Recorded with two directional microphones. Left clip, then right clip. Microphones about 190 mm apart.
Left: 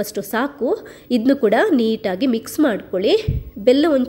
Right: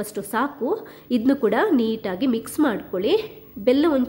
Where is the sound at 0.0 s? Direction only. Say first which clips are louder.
Left 3 dB; 15° left (ahead or behind).